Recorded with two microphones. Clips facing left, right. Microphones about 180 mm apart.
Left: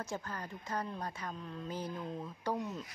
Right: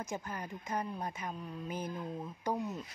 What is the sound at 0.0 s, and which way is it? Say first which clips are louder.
Speech: right 1 dB; 20° right (ahead or behind).